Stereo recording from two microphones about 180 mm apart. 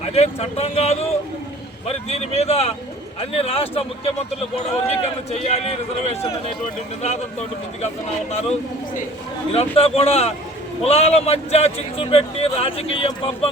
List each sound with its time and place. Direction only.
0.0 s a man's voice: 35° left (ahead or behind)
9.5 s a man's voice: 30° left (ahead or behind)